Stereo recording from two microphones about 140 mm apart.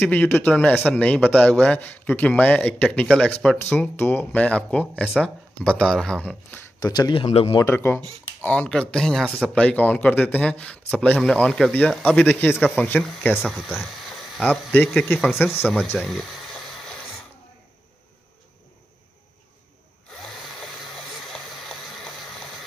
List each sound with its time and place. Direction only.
0.0 s speech: 10° left (ahead or behind)
6.8 s speech: 30° left (ahead or behind)
7.2 s speech: 45° left (ahead or behind)
7.5 s speech: 20° left (ahead or behind)
13.5 s a sound: centre (ahead or behind)
14.4 s speech: 10° left (ahead or behind)
16.0 s boiling: centre (ahead or behind)
20.2 s a sound: centre (ahead or behind)